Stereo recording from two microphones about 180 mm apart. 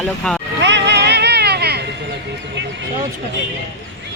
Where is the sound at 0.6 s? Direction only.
75° right (ahead or behind).